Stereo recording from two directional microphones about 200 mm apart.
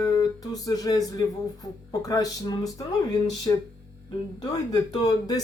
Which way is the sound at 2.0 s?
20° left (ahead or behind).